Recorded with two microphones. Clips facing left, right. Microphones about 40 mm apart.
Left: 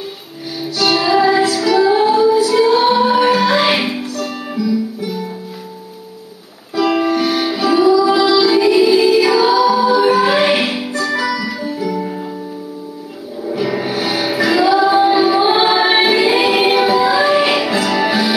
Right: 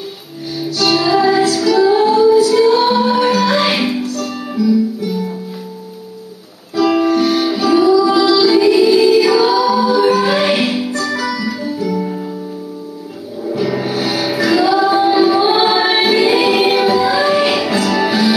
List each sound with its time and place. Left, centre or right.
0.6 s music: centre
6.7 s music: centre
13.5 s music: centre